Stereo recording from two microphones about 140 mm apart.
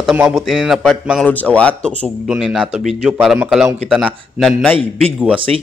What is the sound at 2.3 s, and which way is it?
A man's voice, 5° right (ahead or behind).